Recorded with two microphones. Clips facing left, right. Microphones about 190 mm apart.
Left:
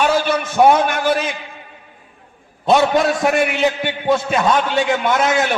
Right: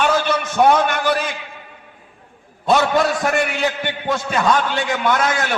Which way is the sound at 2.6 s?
20° left (ahead or behind).